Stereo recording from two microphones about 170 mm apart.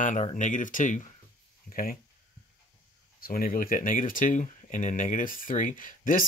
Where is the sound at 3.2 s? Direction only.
60° left (ahead or behind).